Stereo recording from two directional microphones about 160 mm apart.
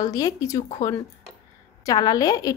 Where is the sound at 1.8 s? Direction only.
25° left (ahead or behind).